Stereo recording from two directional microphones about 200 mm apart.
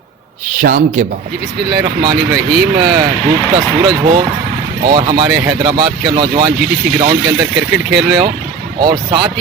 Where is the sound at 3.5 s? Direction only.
20° right (ahead or behind).